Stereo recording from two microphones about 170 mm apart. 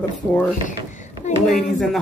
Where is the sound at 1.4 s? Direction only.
Centre (ahead or behind).